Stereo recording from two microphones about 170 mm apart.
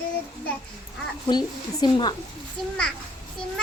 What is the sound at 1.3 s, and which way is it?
Speech, 25° left (ahead or behind).